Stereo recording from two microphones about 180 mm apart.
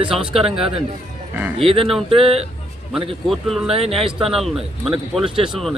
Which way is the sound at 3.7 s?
35° right (ahead or behind).